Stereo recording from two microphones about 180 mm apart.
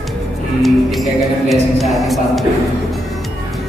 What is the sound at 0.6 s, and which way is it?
Speech, centre (ahead or behind).